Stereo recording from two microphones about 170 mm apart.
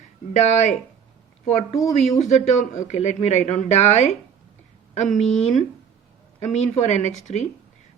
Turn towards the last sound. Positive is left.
turn(degrees=45)  # may be behind; listen again after turning